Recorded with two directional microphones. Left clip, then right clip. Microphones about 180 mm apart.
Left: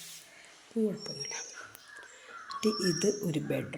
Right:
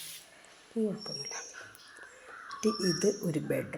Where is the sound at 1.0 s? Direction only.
5° left (ahead or behind).